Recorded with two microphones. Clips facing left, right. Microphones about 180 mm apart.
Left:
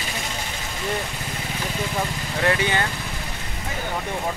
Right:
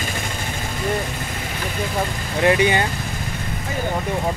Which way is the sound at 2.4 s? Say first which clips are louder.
Right 5 dB; 15° right (ahead or behind).